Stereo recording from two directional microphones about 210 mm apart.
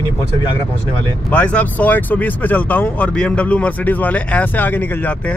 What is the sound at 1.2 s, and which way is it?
Speech, 5° left (ahead or behind).